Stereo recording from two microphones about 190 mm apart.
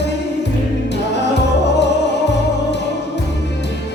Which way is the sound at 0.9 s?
65° left (ahead or behind).